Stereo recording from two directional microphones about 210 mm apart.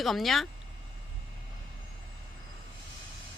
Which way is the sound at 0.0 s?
Centre (ahead or behind).